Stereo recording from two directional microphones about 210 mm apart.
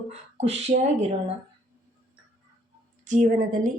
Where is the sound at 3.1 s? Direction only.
35° right (ahead or behind).